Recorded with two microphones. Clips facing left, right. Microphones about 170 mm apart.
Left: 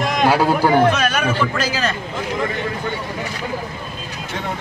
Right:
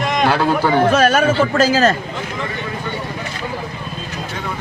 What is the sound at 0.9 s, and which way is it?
A man's voice, 45° right (ahead or behind).